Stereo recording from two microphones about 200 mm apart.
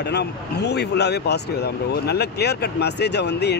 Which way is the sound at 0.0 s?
55° left (ahead or behind).